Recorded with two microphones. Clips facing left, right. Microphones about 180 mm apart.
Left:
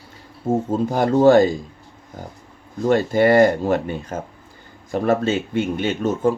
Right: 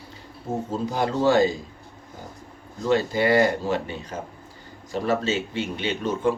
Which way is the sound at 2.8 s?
50° left (ahead or behind).